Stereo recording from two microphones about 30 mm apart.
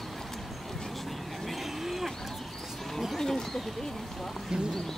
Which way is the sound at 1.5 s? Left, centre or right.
Centre.